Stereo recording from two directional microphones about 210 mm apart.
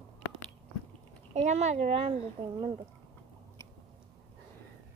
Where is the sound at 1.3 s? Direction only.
30° right (ahead or behind).